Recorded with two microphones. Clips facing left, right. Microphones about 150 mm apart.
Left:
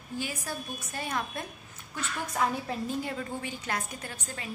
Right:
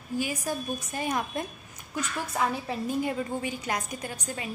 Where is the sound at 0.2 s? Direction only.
15° right (ahead or behind).